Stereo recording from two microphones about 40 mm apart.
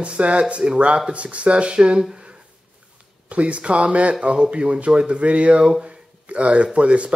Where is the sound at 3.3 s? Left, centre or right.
Right.